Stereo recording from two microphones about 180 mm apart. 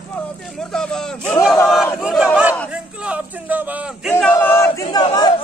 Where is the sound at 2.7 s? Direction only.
5° right (ahead or behind).